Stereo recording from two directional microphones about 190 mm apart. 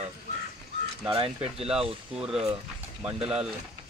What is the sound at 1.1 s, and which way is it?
Speech, 30° right (ahead or behind).